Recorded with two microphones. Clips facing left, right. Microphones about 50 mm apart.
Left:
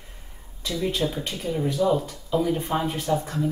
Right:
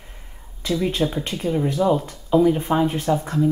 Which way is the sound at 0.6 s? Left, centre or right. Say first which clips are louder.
Right 4 dB; right.